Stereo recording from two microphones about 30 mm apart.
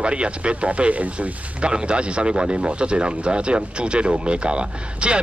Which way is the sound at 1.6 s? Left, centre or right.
Right.